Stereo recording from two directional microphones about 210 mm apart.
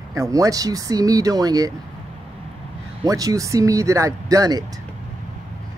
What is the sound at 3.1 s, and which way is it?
Speech, 15° right (ahead or behind).